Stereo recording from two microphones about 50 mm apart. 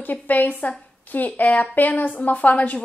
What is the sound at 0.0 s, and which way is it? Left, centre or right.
Speech, left.